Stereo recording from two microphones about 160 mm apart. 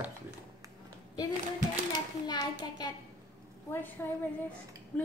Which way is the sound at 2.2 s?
25° left (ahead or behind).